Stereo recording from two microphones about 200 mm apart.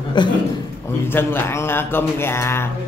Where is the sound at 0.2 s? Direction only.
20° left (ahead or behind).